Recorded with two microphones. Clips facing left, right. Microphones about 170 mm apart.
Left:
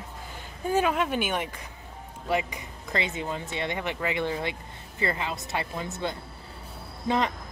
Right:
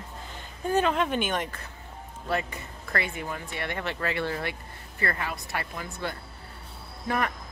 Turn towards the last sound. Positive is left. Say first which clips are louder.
# left 3 dB
turn(degrees=20)  # may be behind; listen again after turning